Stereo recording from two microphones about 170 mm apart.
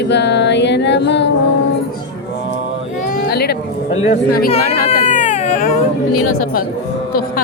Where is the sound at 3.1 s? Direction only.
65° left (ahead or behind).